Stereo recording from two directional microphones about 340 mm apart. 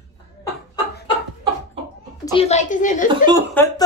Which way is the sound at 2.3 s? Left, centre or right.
Centre.